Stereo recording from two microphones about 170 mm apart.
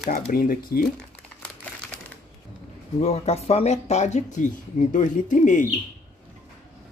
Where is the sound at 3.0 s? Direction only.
40° left (ahead or behind).